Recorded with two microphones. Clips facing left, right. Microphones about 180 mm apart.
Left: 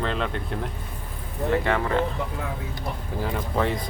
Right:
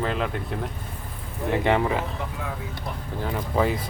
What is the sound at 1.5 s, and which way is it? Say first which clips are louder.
Speech: right 2 dB; 15° right (ahead or behind).